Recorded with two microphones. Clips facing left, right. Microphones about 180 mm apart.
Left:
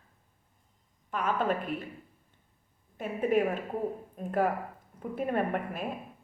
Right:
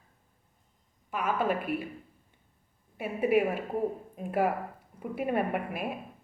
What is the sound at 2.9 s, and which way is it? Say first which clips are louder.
A woman's voice: right 1 dB; 10° right (ahead or behind).